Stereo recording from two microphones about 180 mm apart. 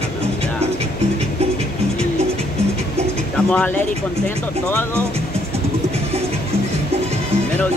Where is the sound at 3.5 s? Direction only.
5° left (ahead or behind).